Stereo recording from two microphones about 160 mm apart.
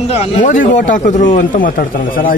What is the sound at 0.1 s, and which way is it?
A man's voice, 45° left (ahead or behind).